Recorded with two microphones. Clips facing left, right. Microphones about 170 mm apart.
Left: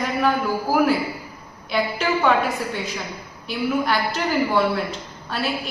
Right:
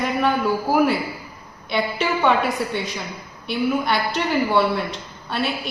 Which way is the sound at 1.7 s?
Centre (ahead or behind).